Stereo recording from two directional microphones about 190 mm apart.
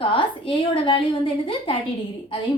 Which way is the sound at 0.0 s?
25° left (ahead or behind).